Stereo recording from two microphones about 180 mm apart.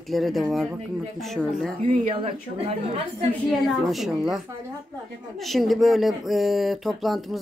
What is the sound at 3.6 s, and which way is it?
Speech, centre (ahead or behind).